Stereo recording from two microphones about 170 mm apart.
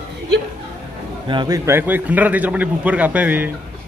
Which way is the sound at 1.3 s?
25° right (ahead or behind).